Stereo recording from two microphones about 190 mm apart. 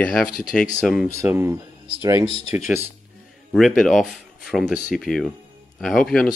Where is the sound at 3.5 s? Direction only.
Centre (ahead or behind).